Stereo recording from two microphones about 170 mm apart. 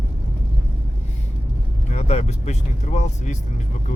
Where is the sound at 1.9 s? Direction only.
40° left (ahead or behind).